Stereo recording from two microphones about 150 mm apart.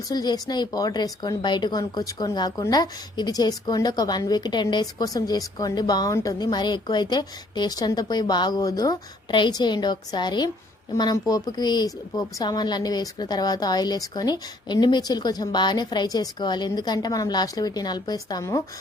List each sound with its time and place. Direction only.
0.1 s speech: 25° left (ahead or behind)